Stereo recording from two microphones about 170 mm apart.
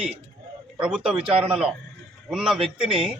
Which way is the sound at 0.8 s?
5° right (ahead or behind).